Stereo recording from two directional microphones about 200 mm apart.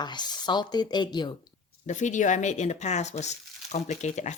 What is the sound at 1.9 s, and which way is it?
Speech, 40° left (ahead or behind).